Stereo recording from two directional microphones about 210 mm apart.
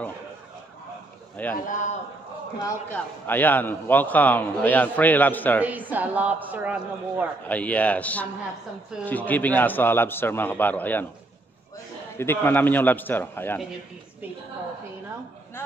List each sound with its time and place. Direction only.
1.7 s a man's voice: 35° left (ahead or behind)
2.6 s a man's voice: 10° left (ahead or behind)
5.6 s a man's voice: 10° right (ahead or behind)
7.4 s a man's voice: 5° left (ahead or behind)
12.2 s a man's voice: 10° left (ahead or behind)